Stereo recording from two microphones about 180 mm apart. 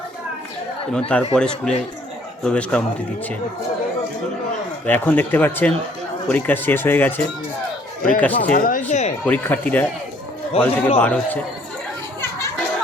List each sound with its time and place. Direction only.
0.9 s speech: 5° left (ahead or behind)
4.9 s speech: 10° left (ahead or behind)
8.2 s speech: 10° left (ahead or behind)
8.5 s speech: 50° left (ahead or behind)
9.2 s speech: 10° left (ahead or behind)